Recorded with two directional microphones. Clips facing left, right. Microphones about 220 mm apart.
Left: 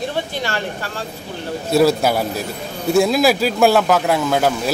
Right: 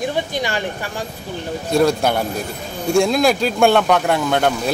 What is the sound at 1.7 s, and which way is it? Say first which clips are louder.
Speech: left 1 dB; 5° left (ahead or behind).